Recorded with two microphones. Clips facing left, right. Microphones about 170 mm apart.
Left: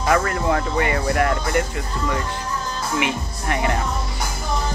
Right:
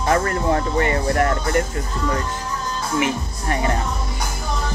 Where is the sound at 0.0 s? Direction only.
35° right (ahead or behind).